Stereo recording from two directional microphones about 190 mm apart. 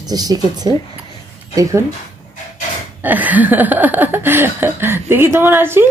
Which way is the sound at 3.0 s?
10° right (ahead or behind).